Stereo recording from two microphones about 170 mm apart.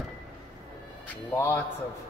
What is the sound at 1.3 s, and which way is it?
Speech, 10° left (ahead or behind).